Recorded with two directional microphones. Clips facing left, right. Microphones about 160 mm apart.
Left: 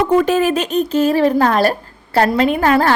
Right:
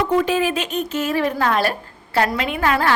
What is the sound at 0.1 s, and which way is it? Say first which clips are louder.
A woman's voice: left 5 dB; 45° left (ahead or behind).